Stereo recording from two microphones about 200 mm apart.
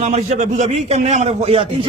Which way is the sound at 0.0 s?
35° right (ahead or behind).